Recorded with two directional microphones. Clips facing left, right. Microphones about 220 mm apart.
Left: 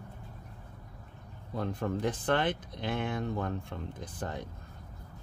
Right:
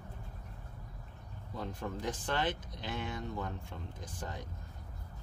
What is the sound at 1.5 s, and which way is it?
Speech, 60° left (ahead or behind).